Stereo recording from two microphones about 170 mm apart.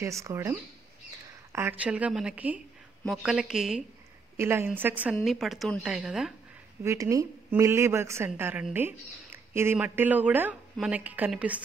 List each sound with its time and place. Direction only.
0.0 s speech: 15° right (ahead or behind)
6.8 s speech: 15° right (ahead or behind)